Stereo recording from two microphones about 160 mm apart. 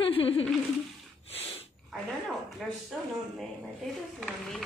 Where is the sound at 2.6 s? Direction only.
Centre (ahead or behind).